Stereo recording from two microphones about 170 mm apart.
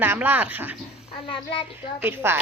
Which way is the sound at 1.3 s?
30° left (ahead or behind).